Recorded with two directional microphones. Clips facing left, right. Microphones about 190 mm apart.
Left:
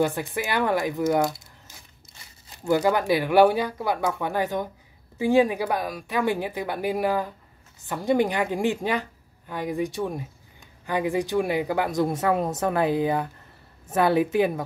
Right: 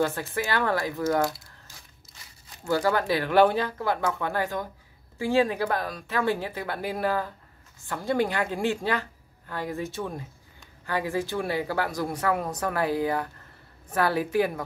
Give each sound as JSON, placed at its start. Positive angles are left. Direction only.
{"t": 0.0, "sound": "speech", "side_deg": 15}